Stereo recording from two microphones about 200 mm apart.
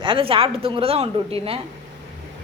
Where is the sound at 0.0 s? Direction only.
25° right (ahead or behind).